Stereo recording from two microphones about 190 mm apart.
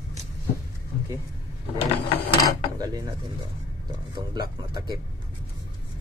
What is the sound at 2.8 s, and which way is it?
Speech, 20° right (ahead or behind).